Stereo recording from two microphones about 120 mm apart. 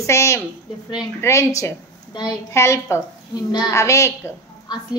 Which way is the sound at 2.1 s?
40° left (ahead or behind).